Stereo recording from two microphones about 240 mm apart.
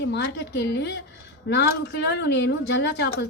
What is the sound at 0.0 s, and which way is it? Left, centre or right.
A woman's voice, left.